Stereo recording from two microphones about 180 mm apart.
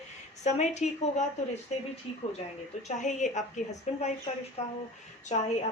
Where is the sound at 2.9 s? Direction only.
40° left (ahead or behind).